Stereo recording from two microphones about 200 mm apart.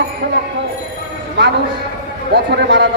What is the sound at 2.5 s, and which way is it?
Speech, 55° right (ahead or behind).